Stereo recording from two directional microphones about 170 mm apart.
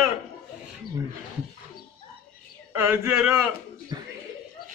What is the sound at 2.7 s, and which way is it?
A man's voice, 15° right (ahead or behind).